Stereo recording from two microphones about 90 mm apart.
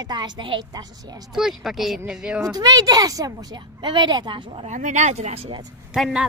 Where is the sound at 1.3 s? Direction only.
5° right (ahead or behind).